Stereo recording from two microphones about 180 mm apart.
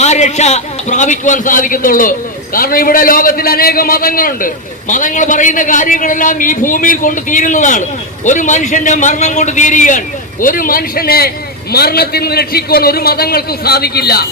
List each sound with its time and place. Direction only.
0.0 s a man's voice: 40° left (ahead or behind); by 14.3 s 60° left (ahead or behind)